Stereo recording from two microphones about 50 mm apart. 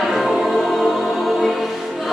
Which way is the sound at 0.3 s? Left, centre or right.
Centre.